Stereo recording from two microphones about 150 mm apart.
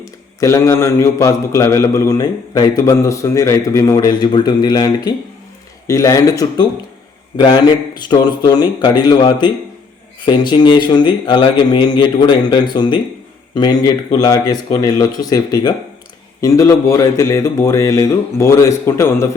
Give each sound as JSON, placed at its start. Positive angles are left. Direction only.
{"t": 0.0, "sound": "a man's voice", "side_deg": 20}